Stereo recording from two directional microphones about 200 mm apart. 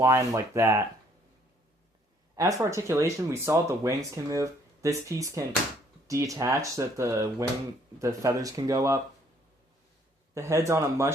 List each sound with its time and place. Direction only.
0.0 s speech: 15° right (ahead or behind)
2.3 s speech: 15° right (ahead or behind)
10.3 s speech: 15° right (ahead or behind)